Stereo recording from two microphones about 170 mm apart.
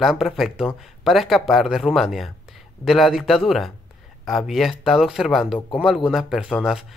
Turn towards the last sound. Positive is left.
turn(degrees=-5)  # may be behind; listen again after turning